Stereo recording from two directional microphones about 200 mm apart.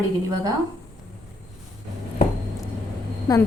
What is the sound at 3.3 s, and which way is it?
Speech, 20° left (ahead or behind).